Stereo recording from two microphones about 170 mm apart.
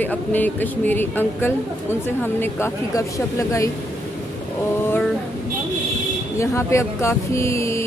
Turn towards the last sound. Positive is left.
turn(degrees=15)  # may be behind; listen again after turning